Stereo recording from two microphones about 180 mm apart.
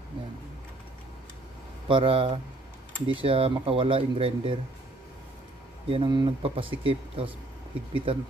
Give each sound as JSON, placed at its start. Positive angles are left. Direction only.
{"t": 1.9, "sound": "speech", "side_deg": -30}
{"t": 5.9, "sound": "speech", "side_deg": -25}